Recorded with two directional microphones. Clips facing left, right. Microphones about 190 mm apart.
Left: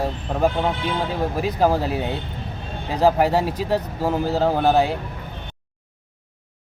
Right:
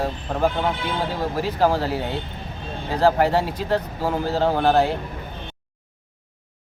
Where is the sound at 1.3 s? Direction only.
15° left (ahead or behind).